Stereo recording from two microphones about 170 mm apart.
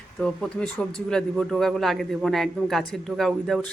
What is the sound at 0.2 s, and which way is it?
Speech, 5° left (ahead or behind).